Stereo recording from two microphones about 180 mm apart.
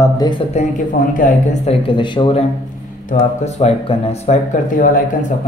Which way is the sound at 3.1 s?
40° left (ahead or behind).